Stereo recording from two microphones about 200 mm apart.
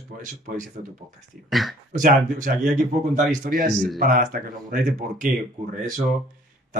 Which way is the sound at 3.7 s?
Centre (ahead or behind).